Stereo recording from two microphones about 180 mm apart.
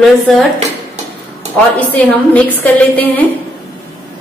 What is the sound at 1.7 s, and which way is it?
A woman's voice, 5° left (ahead or behind).